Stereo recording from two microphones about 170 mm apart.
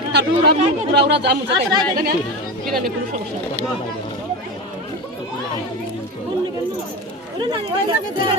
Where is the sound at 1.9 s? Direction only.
65° right (ahead or behind).